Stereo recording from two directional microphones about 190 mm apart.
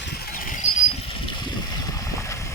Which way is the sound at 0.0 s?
60° left (ahead or behind).